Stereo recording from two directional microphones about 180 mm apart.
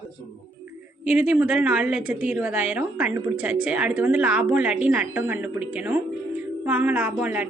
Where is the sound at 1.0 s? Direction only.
10° right (ahead or behind).